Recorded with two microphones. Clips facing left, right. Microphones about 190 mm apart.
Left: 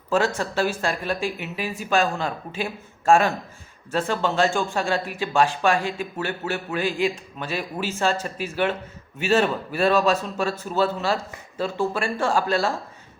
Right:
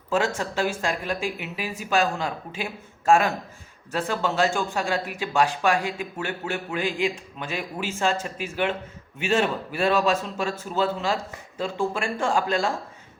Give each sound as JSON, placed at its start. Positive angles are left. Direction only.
{"t": 0.3, "sound": "speech", "side_deg": -15}
{"t": 9.1, "sound": "a man's voice", "side_deg": 40}
{"t": 9.4, "sound": "speech", "side_deg": -10}